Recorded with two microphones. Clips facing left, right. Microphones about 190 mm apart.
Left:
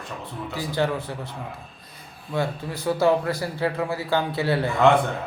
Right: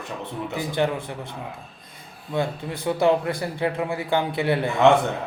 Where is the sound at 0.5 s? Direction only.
20° right (ahead or behind).